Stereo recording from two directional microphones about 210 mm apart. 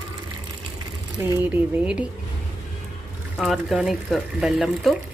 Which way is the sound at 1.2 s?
10° right (ahead or behind).